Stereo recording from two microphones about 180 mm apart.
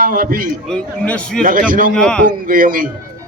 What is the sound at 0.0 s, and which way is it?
Speech, 50° right (ahead or behind).